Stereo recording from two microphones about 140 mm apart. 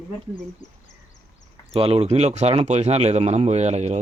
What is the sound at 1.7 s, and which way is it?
Speech, 45° right (ahead or behind).